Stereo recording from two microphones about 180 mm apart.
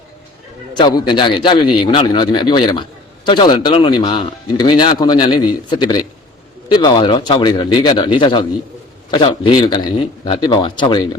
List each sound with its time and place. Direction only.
0.7 s a man's voice: 25° left (ahead or behind)